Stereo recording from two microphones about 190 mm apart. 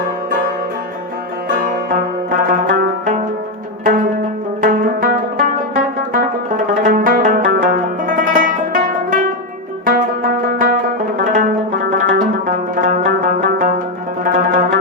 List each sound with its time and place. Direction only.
1.5 s zither: 50° right (ahead or behind)
4.6 s music: 50° right (ahead or behind)
10.4 s music: 50° right (ahead or behind)
11.2 s zither: 45° right (ahead or behind)
11.9 s music: 45° right (ahead or behind)